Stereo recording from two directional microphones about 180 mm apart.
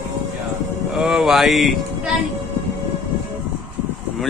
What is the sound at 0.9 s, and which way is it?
Speech, centre (ahead or behind).